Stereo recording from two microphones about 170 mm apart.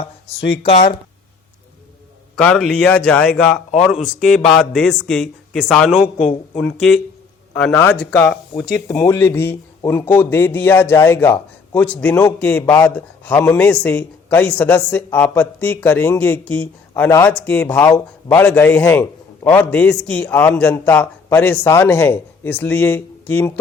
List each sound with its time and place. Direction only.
0.0 s speech: 35° left (ahead or behind)
2.3 s speech: 5° left (ahead or behind)